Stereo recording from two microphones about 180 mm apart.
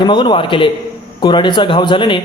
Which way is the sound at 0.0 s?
25° left (ahead or behind).